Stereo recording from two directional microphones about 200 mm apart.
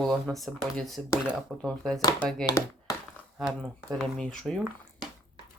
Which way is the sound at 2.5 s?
15° left (ahead or behind).